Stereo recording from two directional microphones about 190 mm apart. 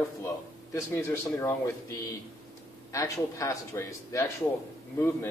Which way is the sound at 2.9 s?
15° left (ahead or behind).